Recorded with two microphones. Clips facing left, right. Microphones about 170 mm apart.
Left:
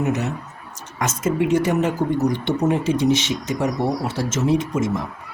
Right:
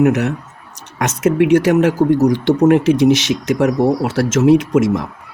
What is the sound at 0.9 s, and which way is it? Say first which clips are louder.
Speech: right 7 dB; 70° right (ahead or behind).